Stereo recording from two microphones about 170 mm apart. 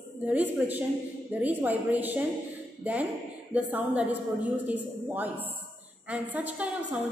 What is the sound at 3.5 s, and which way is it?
A woman's voice, 10° right (ahead or behind).